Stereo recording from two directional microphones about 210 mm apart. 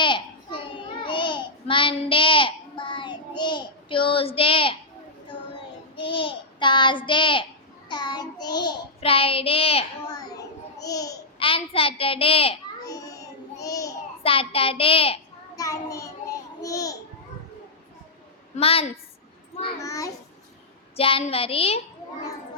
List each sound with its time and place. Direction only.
0.0 s a sound: 25° left (ahead or behind)
6.0 s child singing: 25° left (ahead or behind)
15.5 s child singing: 15° left (ahead or behind)
18.5 s child singing: 25° left (ahead or behind)
20.9 s child singing: 25° left (ahead or behind)